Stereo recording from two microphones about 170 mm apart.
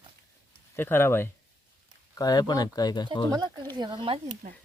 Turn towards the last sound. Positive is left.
turn(degrees=-55)  # may be behind; listen again after turning